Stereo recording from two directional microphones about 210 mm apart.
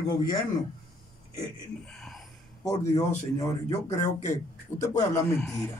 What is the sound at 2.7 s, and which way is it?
Speech, 15° left (ahead or behind).